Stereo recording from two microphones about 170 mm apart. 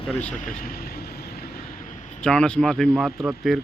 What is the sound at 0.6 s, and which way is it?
Vehicle, 60° left (ahead or behind).